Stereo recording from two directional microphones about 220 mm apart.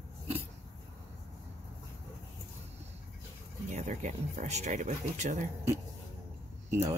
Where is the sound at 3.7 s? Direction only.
30° right (ahead or behind).